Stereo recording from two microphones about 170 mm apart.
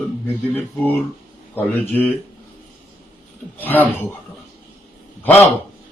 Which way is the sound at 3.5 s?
10° left (ahead or behind).